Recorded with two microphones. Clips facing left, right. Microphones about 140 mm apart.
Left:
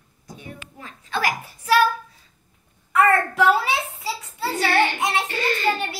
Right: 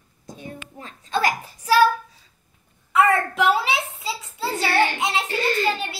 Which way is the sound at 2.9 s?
20° right (ahead or behind).